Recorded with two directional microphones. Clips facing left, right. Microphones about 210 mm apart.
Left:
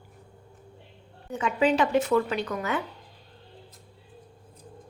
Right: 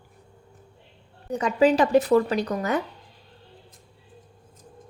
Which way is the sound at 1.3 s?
40° right (ahead or behind).